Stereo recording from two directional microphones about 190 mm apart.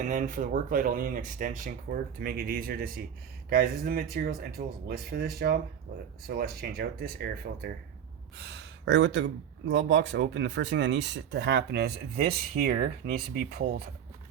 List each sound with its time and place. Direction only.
0.0 s speech: 45° right (ahead or behind)